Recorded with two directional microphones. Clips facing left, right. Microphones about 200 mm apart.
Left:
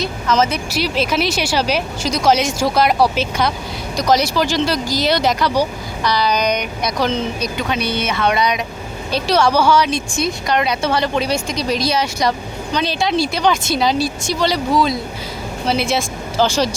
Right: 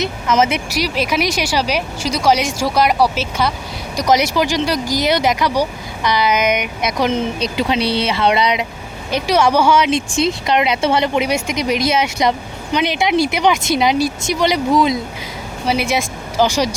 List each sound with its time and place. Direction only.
0.0 s speech: 20° right (ahead or behind)
1.1 s speech: 10° right (ahead or behind)
3.9 s speech: 15° right (ahead or behind)
7.4 s speech: 30° right (ahead or behind)